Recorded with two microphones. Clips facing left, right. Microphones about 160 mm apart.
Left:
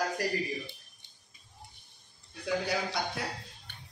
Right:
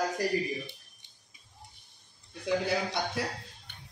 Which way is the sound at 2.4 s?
25° right (ahead or behind).